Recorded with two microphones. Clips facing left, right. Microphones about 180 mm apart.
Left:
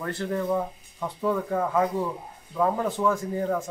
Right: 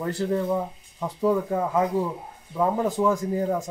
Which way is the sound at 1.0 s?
10° right (ahead or behind).